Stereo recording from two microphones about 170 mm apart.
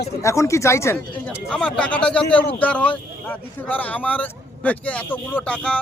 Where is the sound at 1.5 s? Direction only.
5° left (ahead or behind).